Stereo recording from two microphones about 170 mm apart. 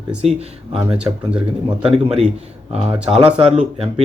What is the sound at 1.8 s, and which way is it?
Speech, 35° right (ahead or behind).